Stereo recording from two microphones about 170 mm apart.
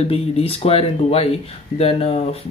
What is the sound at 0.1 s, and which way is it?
Speech, 35° left (ahead or behind).